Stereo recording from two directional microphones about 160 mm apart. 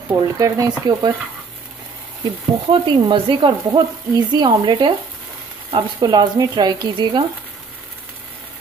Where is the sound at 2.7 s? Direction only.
30° right (ahead or behind).